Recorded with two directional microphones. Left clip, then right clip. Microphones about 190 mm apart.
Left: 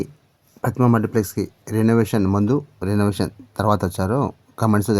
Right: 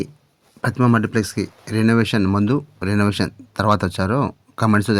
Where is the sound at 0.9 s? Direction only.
20° right (ahead or behind).